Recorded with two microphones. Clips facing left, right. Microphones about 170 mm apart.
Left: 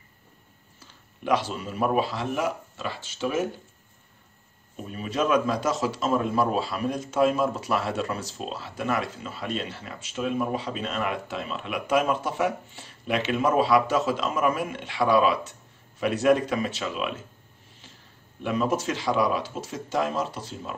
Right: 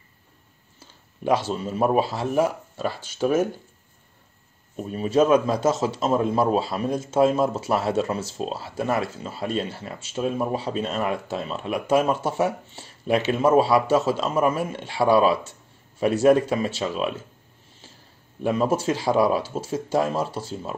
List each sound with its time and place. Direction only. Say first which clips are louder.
0.7 s a sound: right 5 dB; 30° right (ahead or behind)
1.5 s speech: right 4 dB; 30° right (ahead or behind)
2.8 s speech: right 6 dB; 45° right (ahead or behind)
4.9 s speech: right 6 dB; 35° right (ahead or behind)
18.4 s speech: right 4 dB; 30° right (ahead or behind)